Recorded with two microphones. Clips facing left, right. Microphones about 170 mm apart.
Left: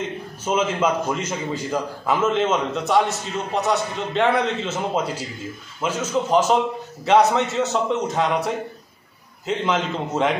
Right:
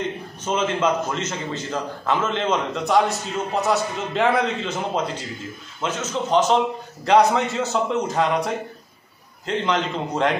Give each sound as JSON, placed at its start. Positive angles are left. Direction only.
{"t": 0.4, "sound": "a man's voice", "side_deg": 10}